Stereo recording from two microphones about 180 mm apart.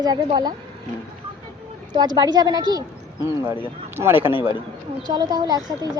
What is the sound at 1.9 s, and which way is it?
Speech, 25° right (ahead or behind).